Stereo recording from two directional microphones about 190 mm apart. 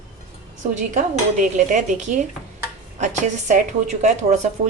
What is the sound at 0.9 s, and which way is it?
A woman's voice, 40° right (ahead or behind).